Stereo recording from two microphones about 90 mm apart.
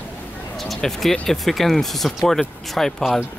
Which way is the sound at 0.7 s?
5° left (ahead or behind).